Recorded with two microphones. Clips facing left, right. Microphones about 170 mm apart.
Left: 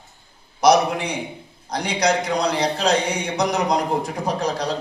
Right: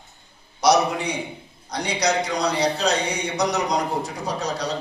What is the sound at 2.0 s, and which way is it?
A man's voice, 55° left (ahead or behind).